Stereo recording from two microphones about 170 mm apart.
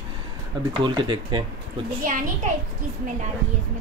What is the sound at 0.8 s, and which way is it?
Speech, 25° right (ahead or behind).